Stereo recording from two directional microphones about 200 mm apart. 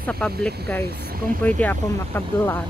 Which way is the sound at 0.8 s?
50° right (ahead or behind).